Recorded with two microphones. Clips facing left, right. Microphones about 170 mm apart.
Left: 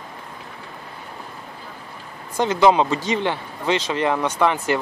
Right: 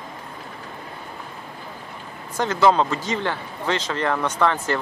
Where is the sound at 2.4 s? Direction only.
15° left (ahead or behind).